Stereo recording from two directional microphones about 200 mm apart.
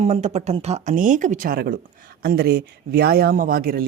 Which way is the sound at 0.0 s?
35° right (ahead or behind).